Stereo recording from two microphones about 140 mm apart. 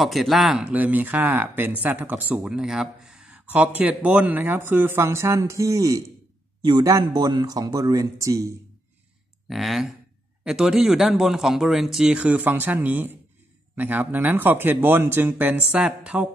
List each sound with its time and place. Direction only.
0.0 s speech: centre (ahead or behind); by 8.5 s 25° right (ahead or behind)
9.5 s speech: centre (ahead or behind)